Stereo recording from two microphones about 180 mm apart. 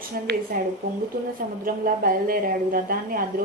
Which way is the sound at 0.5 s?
55° right (ahead or behind).